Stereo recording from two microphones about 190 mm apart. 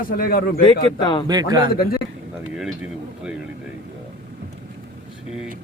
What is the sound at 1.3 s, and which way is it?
Speech, 20° right (ahead or behind).